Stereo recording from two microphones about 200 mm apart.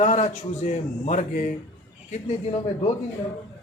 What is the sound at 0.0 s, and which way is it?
A man's voice, 35° left (ahead or behind).